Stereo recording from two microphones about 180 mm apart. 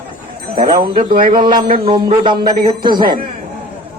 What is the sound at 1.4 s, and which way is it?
Speech, 30° right (ahead or behind).